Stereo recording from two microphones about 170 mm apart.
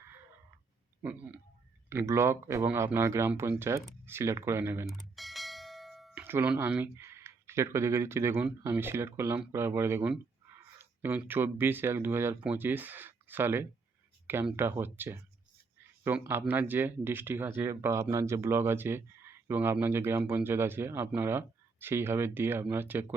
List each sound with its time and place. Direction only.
1.0 s speech: 10° right (ahead or behind)
4.9 s bell: centre (ahead or behind)
6.2 s speech: 10° right (ahead or behind)